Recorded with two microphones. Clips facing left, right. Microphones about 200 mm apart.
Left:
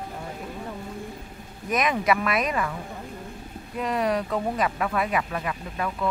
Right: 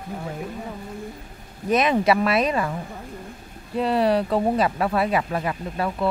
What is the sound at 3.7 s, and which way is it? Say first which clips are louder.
Speech: right 5 dB; 30° right (ahead or behind).